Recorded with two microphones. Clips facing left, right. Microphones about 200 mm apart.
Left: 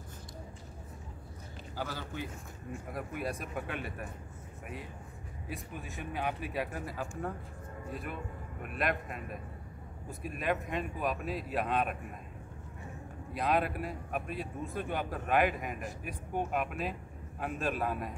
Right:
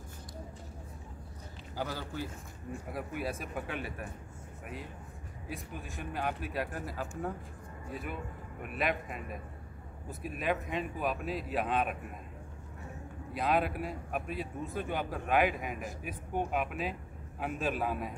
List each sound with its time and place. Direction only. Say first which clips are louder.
1.8 s a man's voice: right 2 dB; 10° right (ahead or behind)
5.5 s speech: even; centre (ahead or behind)
13.4 s speech: even; centre (ahead or behind)